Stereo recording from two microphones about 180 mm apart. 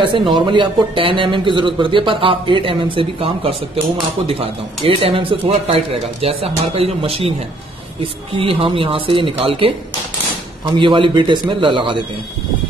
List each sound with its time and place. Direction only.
0.3 s speech: 25° right (ahead or behind)
8.4 s speech: 30° right (ahead or behind)